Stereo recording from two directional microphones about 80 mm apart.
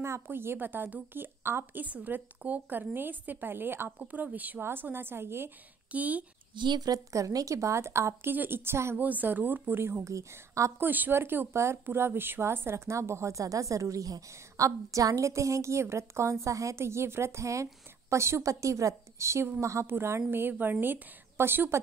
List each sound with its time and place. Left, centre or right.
0.0 s a woman's voice: right
5.9 s speech: centre
6.5 s speech: right
9.0 s a woman's voice: right
10.8 s a woman's voice: right